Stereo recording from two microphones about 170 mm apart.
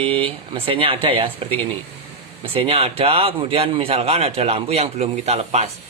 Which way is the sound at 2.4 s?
30° right (ahead or behind).